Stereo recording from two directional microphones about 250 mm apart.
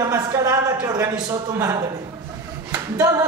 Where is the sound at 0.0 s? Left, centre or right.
Centre.